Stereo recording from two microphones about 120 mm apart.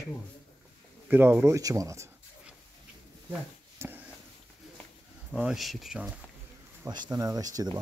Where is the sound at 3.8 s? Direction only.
20° right (ahead or behind).